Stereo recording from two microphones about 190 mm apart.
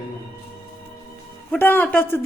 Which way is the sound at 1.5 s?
10° left (ahead or behind).